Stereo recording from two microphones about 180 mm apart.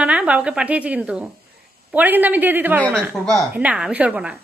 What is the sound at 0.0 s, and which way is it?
A woman's voice, 5° right (ahead or behind).